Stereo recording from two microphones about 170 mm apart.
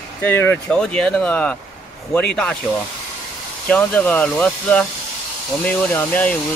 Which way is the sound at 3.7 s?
10° left (ahead or behind).